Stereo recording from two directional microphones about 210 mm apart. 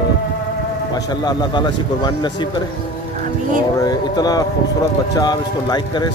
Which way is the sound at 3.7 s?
20° left (ahead or behind).